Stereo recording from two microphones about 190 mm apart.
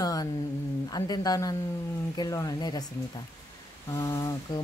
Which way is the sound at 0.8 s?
20° left (ahead or behind).